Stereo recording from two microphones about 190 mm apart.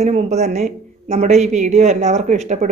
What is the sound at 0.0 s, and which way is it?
Speech, 35° right (ahead or behind).